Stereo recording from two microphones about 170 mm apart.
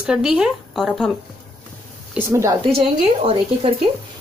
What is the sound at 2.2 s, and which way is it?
Speech, 15° right (ahead or behind).